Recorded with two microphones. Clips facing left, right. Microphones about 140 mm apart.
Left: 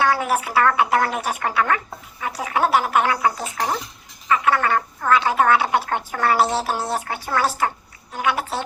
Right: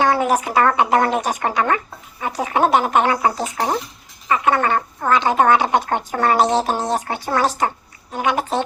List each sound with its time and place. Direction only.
0.5 s speech: 25° right (ahead or behind)